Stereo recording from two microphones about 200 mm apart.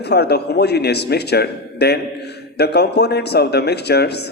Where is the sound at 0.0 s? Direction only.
55° left (ahead or behind).